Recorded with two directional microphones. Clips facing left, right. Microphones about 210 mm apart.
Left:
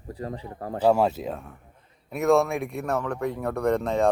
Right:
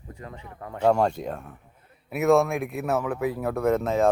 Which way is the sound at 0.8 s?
5° left (ahead or behind).